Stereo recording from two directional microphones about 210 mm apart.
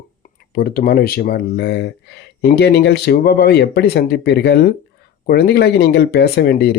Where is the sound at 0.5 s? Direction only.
45° left (ahead or behind).